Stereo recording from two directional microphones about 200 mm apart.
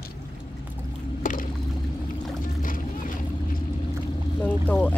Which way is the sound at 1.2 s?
40° left (ahead or behind).